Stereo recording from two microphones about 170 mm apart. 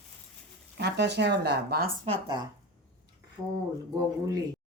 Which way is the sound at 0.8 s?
80° right.